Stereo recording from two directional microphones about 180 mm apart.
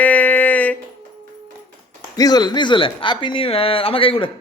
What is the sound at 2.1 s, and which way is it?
Speech, 20° left (ahead or behind).